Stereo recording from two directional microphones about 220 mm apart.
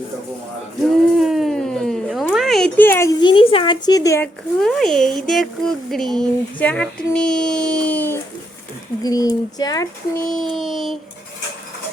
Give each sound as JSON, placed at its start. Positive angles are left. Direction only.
{"t": 0.9, "sound": "a sound", "side_deg": 0}
{"t": 4.6, "sound": "speech", "side_deg": 0}
{"t": 10.2, "sound": "speech", "side_deg": 5}